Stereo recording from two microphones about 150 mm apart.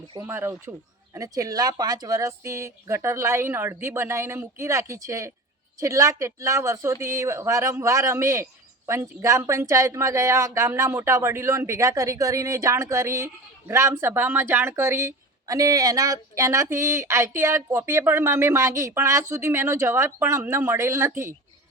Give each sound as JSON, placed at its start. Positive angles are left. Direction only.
{"t": 0.2, "sound": "speech", "side_deg": -15}